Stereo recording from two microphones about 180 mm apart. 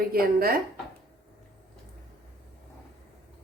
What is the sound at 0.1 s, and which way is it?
Speech, 55° right (ahead or behind).